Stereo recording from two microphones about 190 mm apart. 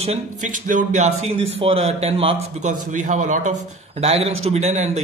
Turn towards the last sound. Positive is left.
turn(degrees=-35)  # may be behind; listen again after turning